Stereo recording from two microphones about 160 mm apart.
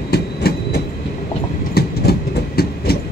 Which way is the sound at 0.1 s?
80° left.